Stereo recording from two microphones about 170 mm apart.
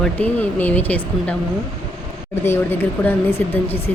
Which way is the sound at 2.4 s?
15° left (ahead or behind).